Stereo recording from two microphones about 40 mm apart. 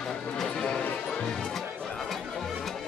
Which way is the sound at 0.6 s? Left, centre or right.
Centre.